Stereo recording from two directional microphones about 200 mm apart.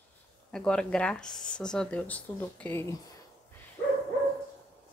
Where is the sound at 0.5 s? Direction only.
5° left (ahead or behind).